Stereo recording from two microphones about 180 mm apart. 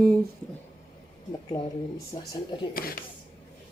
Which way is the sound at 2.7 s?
55° left (ahead or behind).